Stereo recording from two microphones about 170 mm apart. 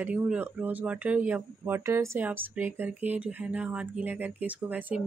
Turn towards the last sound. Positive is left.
turn(degrees=-10)  # may be behind; listen again after turning